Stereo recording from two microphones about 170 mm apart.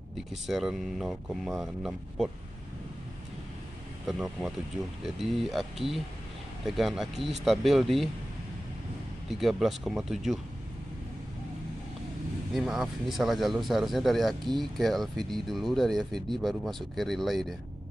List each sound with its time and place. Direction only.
0.3 s speech: centre (ahead or behind)
4.1 s speech: centre (ahead or behind)
9.3 s speech: centre (ahead or behind)
12.5 s speech: centre (ahead or behind)